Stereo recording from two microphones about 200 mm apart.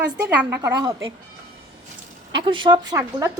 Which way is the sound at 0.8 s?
20° right (ahead or behind).